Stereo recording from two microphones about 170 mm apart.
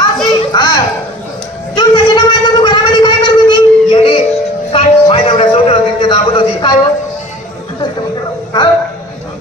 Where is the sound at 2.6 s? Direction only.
25° left (ahead or behind).